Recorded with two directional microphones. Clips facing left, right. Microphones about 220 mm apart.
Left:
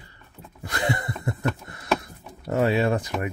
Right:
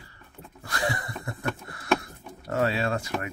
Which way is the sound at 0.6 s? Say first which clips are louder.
Left 3 dB; 20° left (ahead or behind).